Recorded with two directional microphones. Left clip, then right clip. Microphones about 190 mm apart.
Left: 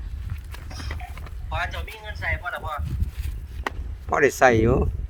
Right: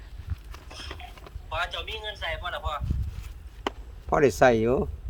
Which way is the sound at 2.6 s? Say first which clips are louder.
Left 1 dB; 30° right (ahead or behind).